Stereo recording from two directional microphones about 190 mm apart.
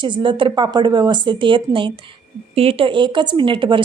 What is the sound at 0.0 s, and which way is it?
Speech, 25° right (ahead or behind).